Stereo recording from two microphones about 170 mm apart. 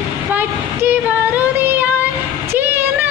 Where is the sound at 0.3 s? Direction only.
10° right (ahead or behind).